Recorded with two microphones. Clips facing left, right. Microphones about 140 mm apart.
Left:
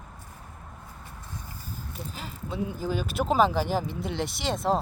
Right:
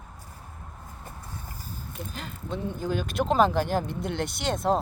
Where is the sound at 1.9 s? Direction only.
Centre (ahead or behind).